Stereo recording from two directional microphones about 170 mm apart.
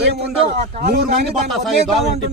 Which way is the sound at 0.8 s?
70° right (ahead or behind).